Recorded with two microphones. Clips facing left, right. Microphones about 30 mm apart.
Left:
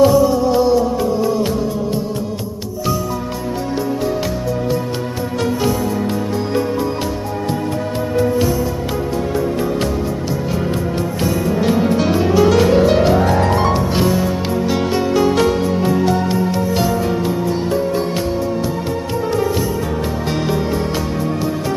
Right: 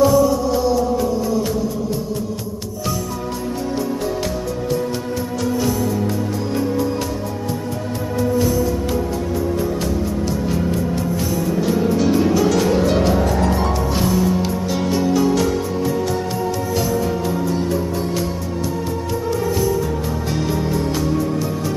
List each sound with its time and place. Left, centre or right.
0.0 s music: left
5.4 s music: left
10.6 s music: left
12.2 s music: left
13.2 s music: left
14.0 s music: left
20.2 s music: left